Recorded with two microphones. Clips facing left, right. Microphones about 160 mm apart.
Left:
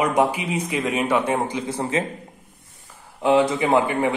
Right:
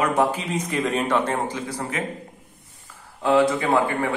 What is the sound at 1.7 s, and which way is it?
Speech, 25° left (ahead or behind).